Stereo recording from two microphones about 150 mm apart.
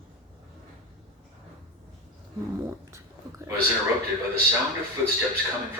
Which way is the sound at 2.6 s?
20° right (ahead or behind).